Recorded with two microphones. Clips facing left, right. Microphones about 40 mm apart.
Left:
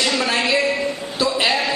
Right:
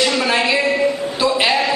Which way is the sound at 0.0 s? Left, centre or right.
Centre.